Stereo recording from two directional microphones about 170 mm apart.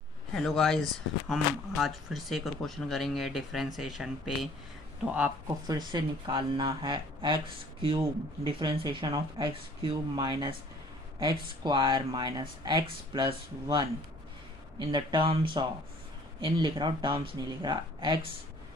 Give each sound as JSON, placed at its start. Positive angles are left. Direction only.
{"t": 0.3, "sound": "speech", "side_deg": 0}
{"t": 5.7, "sound": "speech", "side_deg": -25}